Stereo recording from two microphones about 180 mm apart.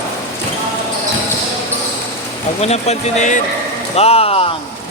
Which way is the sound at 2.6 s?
35° left (ahead or behind).